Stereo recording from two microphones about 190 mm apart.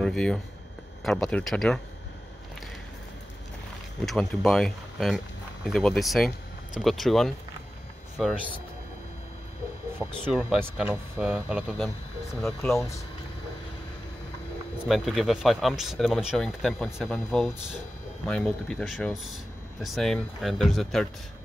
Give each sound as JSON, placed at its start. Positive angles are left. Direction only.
{"t": 0.0, "sound": "speech", "side_deg": 5}
{"t": 4.0, "sound": "speech", "side_deg": 0}
{"t": 9.9, "sound": "speech", "side_deg": 0}
{"t": 14.9, "sound": "speech", "side_deg": 0}